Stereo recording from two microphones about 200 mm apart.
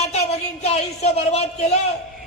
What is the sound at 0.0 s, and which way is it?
Speech, 35° left (ahead or behind).